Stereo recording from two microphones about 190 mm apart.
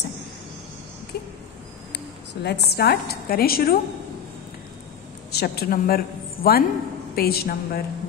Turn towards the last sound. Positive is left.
turn(degrees=55)  # may be behind; listen again after turning